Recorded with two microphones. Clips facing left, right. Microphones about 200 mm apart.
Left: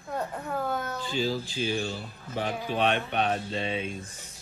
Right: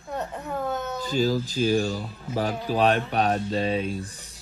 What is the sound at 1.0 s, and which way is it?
Speech, 40° right (ahead or behind).